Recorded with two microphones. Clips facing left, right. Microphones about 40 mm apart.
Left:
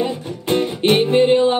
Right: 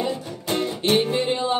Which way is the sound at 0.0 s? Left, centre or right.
Left.